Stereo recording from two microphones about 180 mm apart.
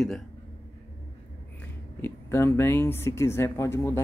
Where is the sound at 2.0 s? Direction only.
15° left (ahead or behind).